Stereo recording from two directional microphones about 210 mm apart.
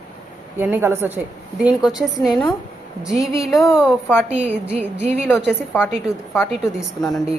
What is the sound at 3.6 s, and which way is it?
A woman's voice, 5° right (ahead or behind).